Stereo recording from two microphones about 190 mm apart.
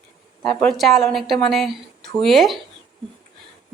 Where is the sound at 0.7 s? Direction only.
Centre (ahead or behind).